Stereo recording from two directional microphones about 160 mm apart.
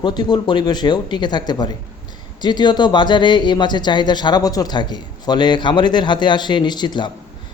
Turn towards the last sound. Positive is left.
turn(degrees=25)  # may be behind; listen again after turning